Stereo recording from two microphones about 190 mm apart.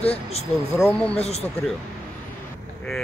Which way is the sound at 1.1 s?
35° left (ahead or behind).